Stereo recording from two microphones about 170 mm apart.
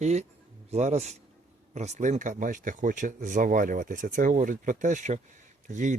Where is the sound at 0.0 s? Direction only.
40° right (ahead or behind).